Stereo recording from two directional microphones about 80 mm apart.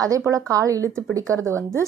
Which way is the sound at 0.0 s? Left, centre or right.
Right.